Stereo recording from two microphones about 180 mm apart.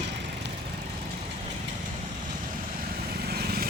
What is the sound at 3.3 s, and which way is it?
Vehicle, 60° right (ahead or behind).